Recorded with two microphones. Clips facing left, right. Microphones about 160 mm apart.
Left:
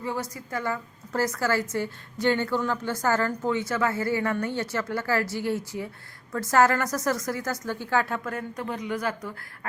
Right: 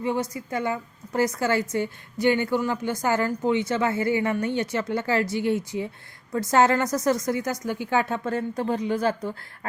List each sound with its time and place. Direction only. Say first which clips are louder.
0.0 s a woman's voice: right 5 dB; 20° right (ahead or behind)